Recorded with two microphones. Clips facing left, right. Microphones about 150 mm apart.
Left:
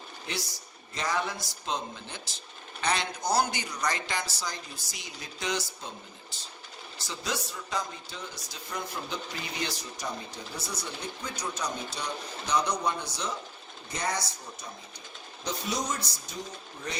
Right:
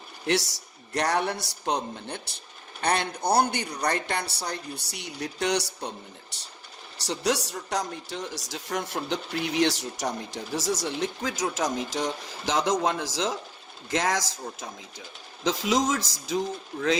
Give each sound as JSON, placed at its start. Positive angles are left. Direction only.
{"t": 0.3, "sound": "a man's voice", "side_deg": -80}